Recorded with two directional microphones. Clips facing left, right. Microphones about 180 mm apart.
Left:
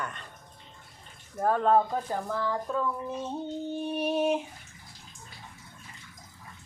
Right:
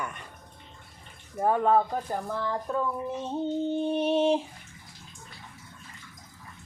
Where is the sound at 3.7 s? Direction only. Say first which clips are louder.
Right 2 dB; 25° right (ahead or behind).